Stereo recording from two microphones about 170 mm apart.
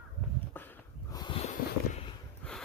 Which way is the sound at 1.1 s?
25° left (ahead or behind).